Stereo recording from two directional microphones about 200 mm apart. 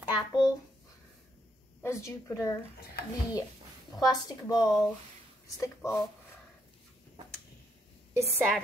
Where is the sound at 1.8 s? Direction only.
15° left (ahead or behind).